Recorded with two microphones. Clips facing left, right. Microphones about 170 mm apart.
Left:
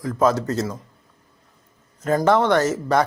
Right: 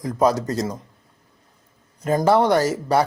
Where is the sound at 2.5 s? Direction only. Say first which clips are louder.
Even; 10° right (ahead or behind).